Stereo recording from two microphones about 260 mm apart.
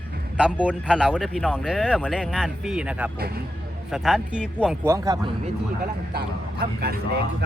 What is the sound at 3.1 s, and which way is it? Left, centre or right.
Speech, right.